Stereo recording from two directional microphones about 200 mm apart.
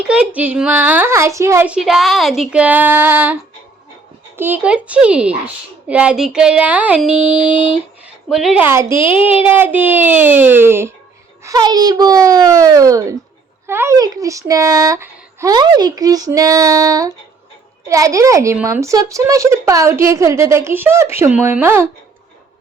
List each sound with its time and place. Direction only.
0.0 s a woman's voice: 5° right (ahead or behind)
4.4 s speech: 10° right (ahead or behind)
7.5 s speech: 25° left (ahead or behind)
8.0 s a woman's voice: centre (ahead or behind)
9.0 s speech: 25° left (ahead or behind)
9.4 s a woman's voice: 10° right (ahead or behind)